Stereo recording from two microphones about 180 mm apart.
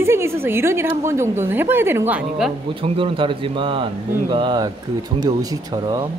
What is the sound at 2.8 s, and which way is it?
A man's voice, 30° right (ahead or behind).